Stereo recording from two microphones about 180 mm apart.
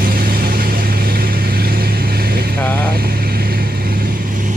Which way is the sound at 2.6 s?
10° left (ahead or behind).